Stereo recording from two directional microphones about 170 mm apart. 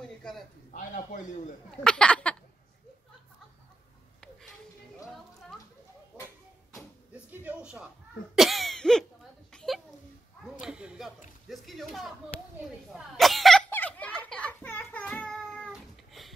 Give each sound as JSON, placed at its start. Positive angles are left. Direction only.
{"t": 0.2, "sound": "a sound", "side_deg": 0}
{"t": 0.7, "sound": "a man's voice", "side_deg": 50}
{"t": 1.8, "sound": "speech", "side_deg": 5}
{"t": 6.7, "sound": "door", "side_deg": -10}
{"t": 8.4, "sound": "cough", "side_deg": 0}
{"t": 9.5, "sound": "a sound", "side_deg": 5}
{"t": 12.6, "sound": "cough", "side_deg": 0}